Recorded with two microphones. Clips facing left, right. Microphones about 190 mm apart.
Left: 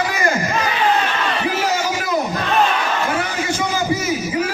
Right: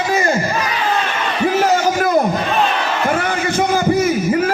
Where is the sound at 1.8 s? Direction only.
50° right (ahead or behind).